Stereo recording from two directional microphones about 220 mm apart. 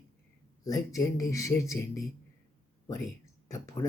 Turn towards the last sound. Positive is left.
turn(degrees=15)  # may be behind; listen again after turning